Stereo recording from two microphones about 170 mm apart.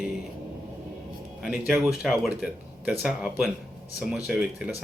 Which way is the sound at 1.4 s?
Centre (ahead or behind).